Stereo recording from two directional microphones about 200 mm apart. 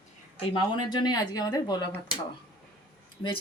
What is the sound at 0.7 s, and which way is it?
Speech, 20° left (ahead or behind).